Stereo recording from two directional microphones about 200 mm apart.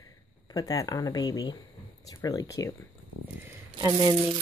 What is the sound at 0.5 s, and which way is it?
Speech, 20° left (ahead or behind).